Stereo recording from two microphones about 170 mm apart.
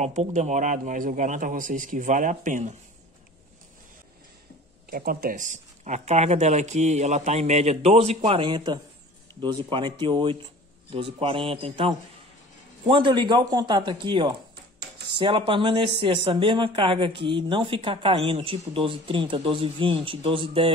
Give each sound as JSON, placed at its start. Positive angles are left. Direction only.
{"t": 0.0, "sound": "speech", "side_deg": -40}
{"t": 4.8, "sound": "speech", "side_deg": -60}